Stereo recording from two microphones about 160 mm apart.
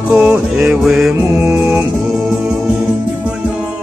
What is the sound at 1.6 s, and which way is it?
Music, 5° right (ahead or behind).